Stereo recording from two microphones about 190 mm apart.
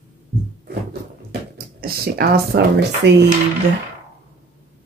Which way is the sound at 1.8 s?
55° right (ahead or behind).